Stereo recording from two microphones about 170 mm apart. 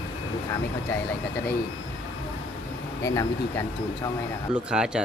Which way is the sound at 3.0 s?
15° left (ahead or behind).